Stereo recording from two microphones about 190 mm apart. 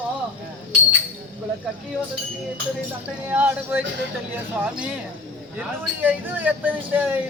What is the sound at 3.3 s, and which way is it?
Speech, 10° right (ahead or behind).